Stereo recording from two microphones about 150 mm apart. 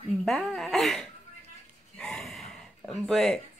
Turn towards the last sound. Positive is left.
turn(degrees=5)  # may be behind; listen again after turning